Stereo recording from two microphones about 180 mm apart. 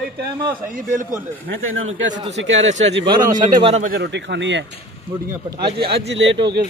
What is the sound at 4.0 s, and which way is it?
Speech, 80° right.